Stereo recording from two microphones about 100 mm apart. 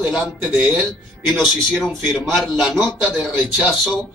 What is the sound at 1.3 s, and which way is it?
A man's voice, 5° left (ahead or behind).